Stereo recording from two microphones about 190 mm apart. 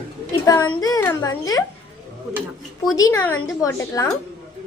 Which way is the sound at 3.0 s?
15° left (ahead or behind).